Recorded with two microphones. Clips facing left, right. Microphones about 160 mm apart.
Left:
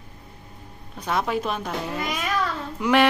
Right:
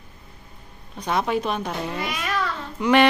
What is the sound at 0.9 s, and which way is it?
Speech, centre (ahead or behind).